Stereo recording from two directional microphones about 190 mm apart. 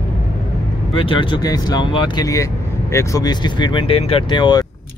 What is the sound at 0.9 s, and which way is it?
Speech, 25° left (ahead or behind).